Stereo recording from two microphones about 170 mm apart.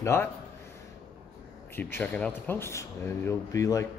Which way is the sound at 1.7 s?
10° left (ahead or behind).